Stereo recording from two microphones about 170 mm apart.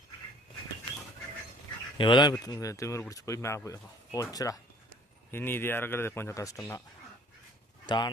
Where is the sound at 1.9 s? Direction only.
25° left (ahead or behind).